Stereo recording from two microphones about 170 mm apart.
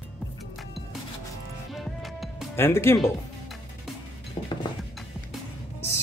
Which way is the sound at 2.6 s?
15° left (ahead or behind).